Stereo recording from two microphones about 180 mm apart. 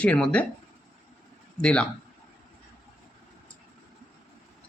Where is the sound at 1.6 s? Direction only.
5° left (ahead or behind).